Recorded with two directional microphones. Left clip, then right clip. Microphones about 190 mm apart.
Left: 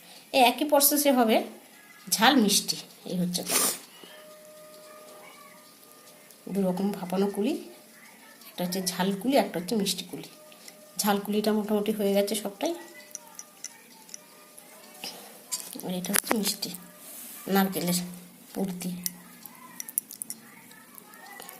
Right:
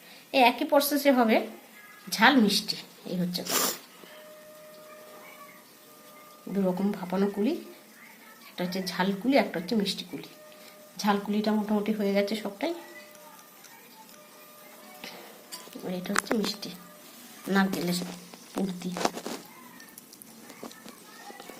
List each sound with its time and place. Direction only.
0.3 s a woman's voice: 15° left (ahead or behind)
6.5 s a woman's voice: 15° left (ahead or behind)
8.5 s a woman's voice: 15° left (ahead or behind)
15.9 s a woman's voice: 15° left (ahead or behind)